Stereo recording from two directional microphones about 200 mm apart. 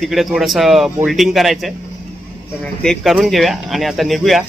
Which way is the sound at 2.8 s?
Centre (ahead or behind).